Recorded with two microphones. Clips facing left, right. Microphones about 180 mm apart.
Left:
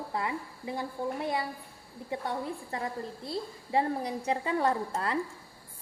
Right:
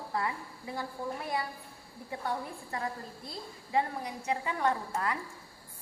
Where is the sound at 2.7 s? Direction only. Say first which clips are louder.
Right 1 dB; 25° left (ahead or behind).